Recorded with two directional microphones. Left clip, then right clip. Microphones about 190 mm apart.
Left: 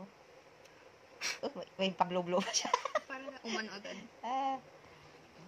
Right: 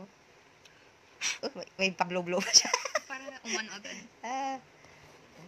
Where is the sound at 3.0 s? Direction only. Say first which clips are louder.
Right 3 dB; 40° left (ahead or behind).